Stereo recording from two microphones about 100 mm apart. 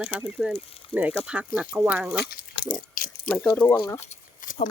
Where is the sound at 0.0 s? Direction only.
10° right (ahead or behind).